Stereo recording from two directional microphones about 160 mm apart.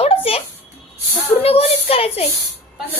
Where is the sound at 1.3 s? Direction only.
40° left (ahead or behind).